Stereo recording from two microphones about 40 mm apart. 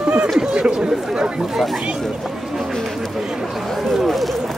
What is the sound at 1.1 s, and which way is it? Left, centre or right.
Speech, centre.